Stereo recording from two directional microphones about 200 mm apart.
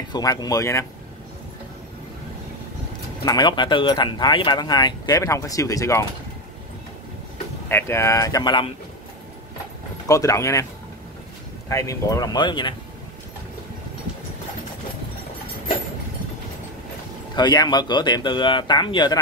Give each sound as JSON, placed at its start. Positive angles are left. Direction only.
{"t": 0.1, "sound": "speech", "side_deg": 20}
{"t": 3.3, "sound": "speech", "side_deg": 20}
{"t": 7.6, "sound": "speech", "side_deg": 10}
{"t": 10.0, "sound": "speech", "side_deg": 15}
{"t": 11.7, "sound": "speech", "side_deg": 15}
{"t": 17.4, "sound": "speech", "side_deg": 20}